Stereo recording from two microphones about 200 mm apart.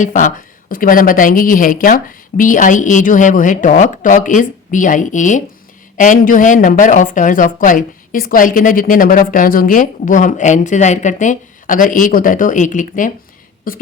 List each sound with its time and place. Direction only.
0.0 s speech: 40° left (ahead or behind)